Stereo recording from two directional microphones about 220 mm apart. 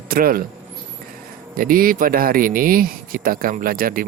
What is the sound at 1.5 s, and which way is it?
Speech, 40° right (ahead or behind).